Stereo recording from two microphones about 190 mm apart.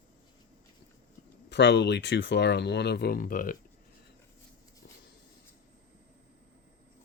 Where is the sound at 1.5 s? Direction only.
65° left (ahead or behind); by 3.6 s 45° left (ahead or behind).